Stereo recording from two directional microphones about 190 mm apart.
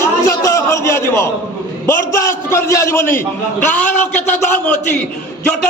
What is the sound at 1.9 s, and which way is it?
A man's voice, 10° left (ahead or behind).